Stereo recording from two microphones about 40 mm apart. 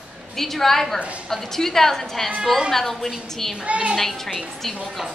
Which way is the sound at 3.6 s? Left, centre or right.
Right.